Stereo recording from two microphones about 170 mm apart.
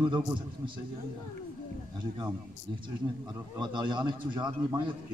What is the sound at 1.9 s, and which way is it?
Speech, 25° right (ahead or behind).